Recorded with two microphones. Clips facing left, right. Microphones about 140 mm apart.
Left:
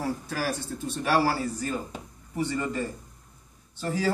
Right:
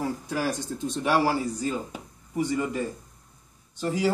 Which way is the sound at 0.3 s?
20° right (ahead or behind).